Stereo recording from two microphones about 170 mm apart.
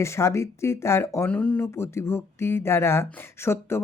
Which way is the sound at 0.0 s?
15° left (ahead or behind).